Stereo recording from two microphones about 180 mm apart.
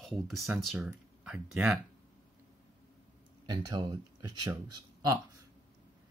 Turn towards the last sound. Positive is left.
turn(degrees=-25)  # may be behind; listen again after turning